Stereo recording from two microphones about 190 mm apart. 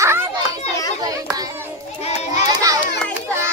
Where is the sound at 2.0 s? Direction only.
35° left (ahead or behind).